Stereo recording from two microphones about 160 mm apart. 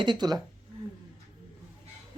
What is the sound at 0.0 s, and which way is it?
Speech, 30° right (ahead or behind).